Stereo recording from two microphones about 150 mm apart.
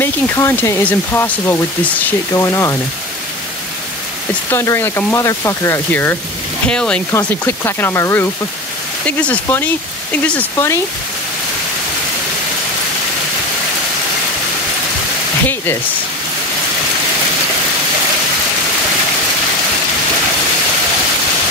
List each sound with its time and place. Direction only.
0.0 s speech: 15° left (ahead or behind)
4.5 s speech: 15° left (ahead or behind)
7.1 s speech: 15° left (ahead or behind)
15.4 s speech: 15° left (ahead or behind)